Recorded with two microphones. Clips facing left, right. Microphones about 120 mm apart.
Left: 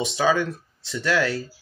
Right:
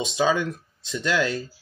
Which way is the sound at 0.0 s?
20° right (ahead or behind).